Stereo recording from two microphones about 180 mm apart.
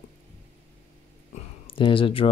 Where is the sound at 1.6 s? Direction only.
30° left (ahead or behind).